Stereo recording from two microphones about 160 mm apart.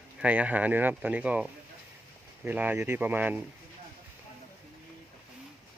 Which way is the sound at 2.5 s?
10° right (ahead or behind).